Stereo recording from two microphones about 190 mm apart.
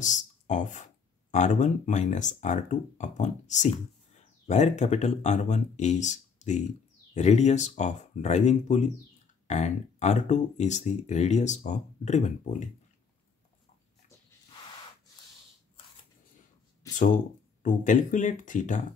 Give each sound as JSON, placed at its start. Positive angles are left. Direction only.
{"t": 0.0, "sound": "speech", "side_deg": 40}
{"t": 16.9, "sound": "speech", "side_deg": 40}